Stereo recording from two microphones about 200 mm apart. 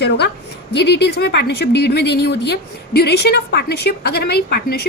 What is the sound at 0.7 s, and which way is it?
A woman's voice, 55° left (ahead or behind).